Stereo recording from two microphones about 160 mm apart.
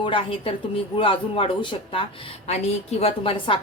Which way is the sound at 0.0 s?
30° left (ahead or behind).